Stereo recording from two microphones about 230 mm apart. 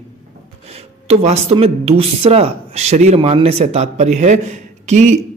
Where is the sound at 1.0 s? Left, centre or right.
Right.